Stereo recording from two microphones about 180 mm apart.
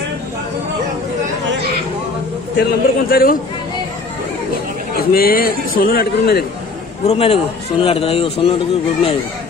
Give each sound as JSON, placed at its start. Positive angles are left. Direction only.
{"t": 2.5, "sound": "a man's voice", "side_deg": 60}
{"t": 5.1, "sound": "a man's voice", "side_deg": 55}
{"t": 7.1, "sound": "speech", "side_deg": 30}